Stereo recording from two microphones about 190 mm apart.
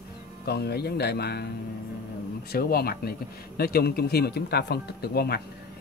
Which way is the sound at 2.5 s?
55° left (ahead or behind).